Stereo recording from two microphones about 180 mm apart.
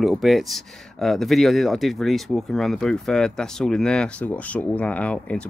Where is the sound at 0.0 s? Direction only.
Centre (ahead or behind).